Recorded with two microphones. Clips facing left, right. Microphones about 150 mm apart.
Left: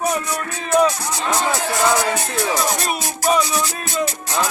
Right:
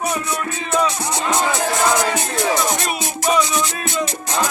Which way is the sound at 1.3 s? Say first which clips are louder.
Right 1 dB; 20° right (ahead or behind).